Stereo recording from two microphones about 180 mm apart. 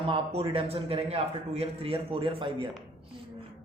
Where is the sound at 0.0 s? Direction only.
30° right (ahead or behind).